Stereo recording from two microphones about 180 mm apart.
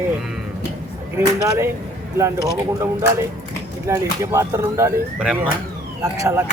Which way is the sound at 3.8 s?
20° right (ahead or behind).